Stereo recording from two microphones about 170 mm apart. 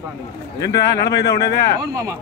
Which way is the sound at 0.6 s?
80° left.